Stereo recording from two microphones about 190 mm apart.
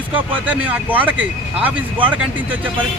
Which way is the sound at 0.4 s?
10° right (ahead or behind).